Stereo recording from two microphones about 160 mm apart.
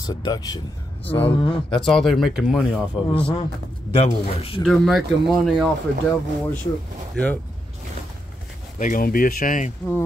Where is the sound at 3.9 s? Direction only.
40° left (ahead or behind).